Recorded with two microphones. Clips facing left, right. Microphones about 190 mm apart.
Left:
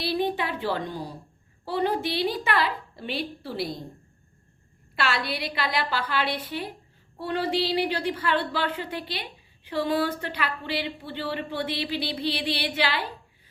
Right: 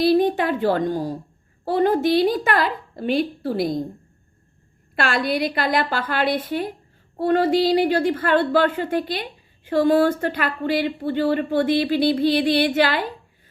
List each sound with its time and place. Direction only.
0.0 s speech: 45° right (ahead or behind)
4.9 s speech: 50° right (ahead or behind)